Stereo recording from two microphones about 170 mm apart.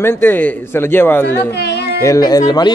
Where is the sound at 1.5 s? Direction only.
80° left.